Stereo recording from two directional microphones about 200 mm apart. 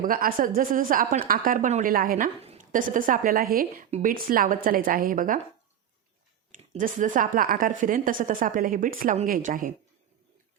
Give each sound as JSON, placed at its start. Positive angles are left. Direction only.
{"t": 0.0, "sound": "speech", "side_deg": -45}
{"t": 6.5, "sound": "speech", "side_deg": -40}